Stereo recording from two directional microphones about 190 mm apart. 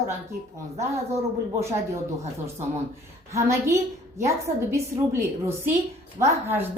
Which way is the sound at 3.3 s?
15° right (ahead or behind).